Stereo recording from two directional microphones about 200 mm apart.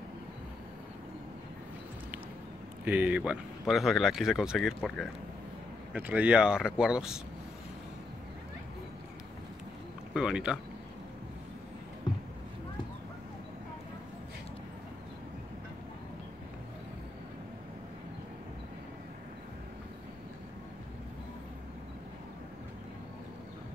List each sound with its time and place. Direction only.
2.8 s speech: 5° right (ahead or behind)
10.1 s speech: 5° right (ahead or behind)